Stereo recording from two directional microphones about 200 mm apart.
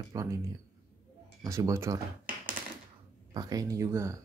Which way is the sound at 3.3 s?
20° right (ahead or behind).